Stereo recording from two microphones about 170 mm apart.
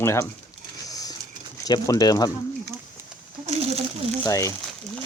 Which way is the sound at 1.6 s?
20° left (ahead or behind).